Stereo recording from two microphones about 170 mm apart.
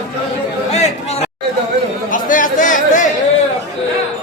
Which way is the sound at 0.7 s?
40° left (ahead or behind).